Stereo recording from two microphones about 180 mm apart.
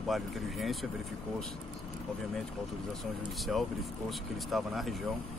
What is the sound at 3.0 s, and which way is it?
Speech, centre (ahead or behind).